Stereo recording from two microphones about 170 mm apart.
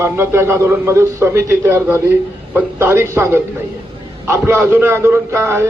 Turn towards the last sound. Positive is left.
turn(degrees=-15)  # may be behind; listen again after turning